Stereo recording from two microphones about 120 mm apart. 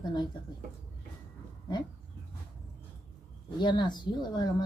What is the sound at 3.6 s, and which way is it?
Speech, 40° left (ahead or behind).